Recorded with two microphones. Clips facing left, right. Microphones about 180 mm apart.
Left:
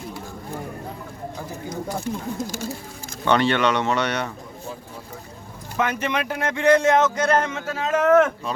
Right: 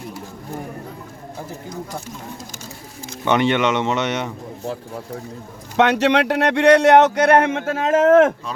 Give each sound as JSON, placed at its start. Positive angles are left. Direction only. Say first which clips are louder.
{"t": 3.2, "sound": "speech", "louder": "right 2 dB", "side_deg": -20}
{"t": 5.7, "sound": "speech", "louder": "right 8 dB", "side_deg": -75}